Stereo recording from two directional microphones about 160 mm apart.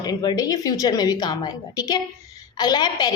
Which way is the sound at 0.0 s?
25° left (ahead or behind).